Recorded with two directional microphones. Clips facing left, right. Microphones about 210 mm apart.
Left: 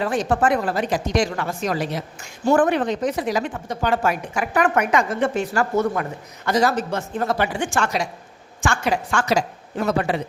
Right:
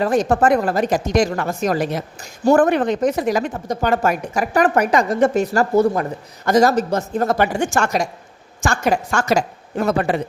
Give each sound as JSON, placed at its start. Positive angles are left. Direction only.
{"t": 0.0, "sound": "a woman's voice", "side_deg": -45}